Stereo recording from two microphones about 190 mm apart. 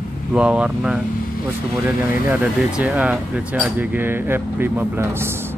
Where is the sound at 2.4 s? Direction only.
5° right (ahead or behind).